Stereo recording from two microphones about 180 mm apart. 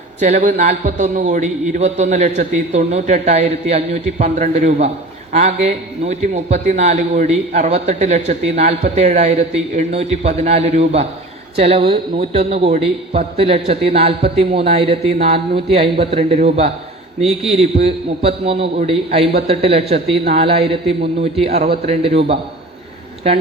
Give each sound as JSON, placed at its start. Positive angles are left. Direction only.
{"t": 0.4, "sound": "a man's voice", "side_deg": -40}